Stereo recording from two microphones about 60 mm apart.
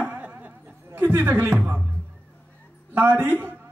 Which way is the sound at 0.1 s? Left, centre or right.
Right.